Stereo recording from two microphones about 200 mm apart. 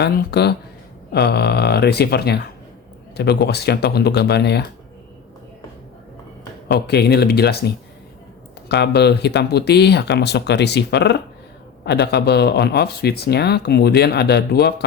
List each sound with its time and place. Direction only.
0.0 s speech: 55° left (ahead or behind)
6.7 s speech: 55° left (ahead or behind)
8.7 s speech: 55° left (ahead or behind)